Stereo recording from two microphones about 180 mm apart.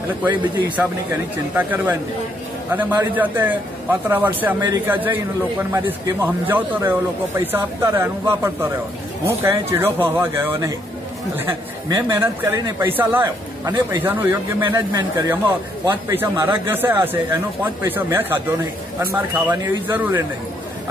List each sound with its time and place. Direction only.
0.7 s a man's voice: 10° right (ahead or behind)